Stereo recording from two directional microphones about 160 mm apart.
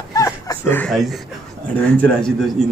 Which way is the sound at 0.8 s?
Centre (ahead or behind).